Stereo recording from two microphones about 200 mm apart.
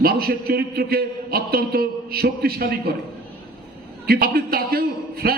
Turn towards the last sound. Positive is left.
turn(degrees=-50)  # may be behind; listen again after turning